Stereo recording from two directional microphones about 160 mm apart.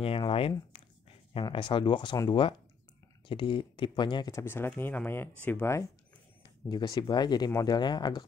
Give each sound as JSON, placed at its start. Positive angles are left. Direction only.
{"t": 0.0, "sound": "speech", "side_deg": 35}
{"t": 6.4, "sound": "speech", "side_deg": 25}